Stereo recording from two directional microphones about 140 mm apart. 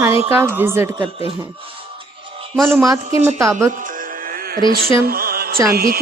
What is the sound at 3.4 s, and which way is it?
Speech, 20° right (ahead or behind).